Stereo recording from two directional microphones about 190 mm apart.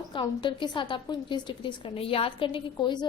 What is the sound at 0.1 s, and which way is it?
A woman's voice, 25° left (ahead or behind).